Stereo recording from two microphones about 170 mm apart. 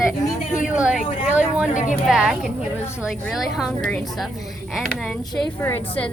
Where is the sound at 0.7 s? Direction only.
5° right (ahead or behind).